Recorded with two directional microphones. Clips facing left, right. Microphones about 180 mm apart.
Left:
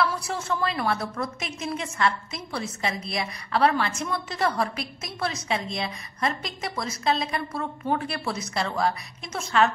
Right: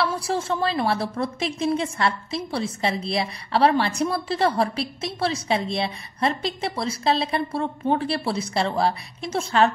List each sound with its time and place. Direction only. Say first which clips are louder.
0.0 s a woman's voice: right 3 dB; 30° right (ahead or behind)